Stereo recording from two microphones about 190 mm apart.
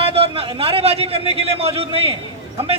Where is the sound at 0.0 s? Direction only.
30° right (ahead or behind).